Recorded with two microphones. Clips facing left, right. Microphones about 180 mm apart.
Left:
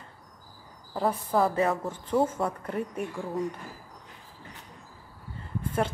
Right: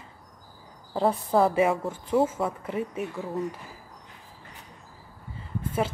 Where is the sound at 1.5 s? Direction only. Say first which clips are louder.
Right 3 dB; 10° right (ahead or behind).